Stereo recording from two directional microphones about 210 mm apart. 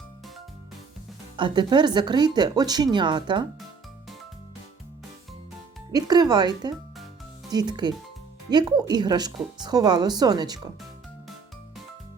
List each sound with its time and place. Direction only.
1.4 s speech: 20° right (ahead or behind)
5.9 s speech: 20° right (ahead or behind)